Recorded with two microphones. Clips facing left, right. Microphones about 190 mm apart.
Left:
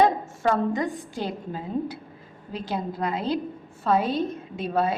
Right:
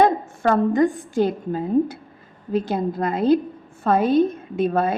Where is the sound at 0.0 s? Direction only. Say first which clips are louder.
Right 3 dB; 55° right (ahead or behind).